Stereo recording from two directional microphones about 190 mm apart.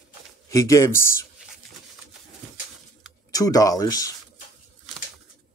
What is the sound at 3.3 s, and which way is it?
Speech, 20° left (ahead or behind).